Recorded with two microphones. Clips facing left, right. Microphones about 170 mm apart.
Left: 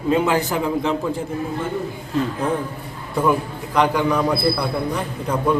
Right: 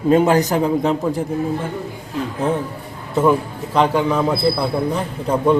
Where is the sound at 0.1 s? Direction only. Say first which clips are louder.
Right 4 dB; 40° right (ahead or behind).